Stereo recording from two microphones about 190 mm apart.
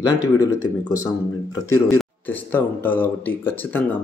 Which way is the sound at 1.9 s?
10° left (ahead or behind).